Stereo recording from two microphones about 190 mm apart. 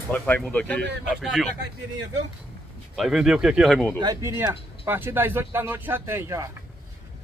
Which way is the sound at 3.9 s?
20° right (ahead or behind).